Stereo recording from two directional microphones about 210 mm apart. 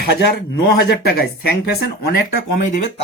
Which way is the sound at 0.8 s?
50° left (ahead or behind).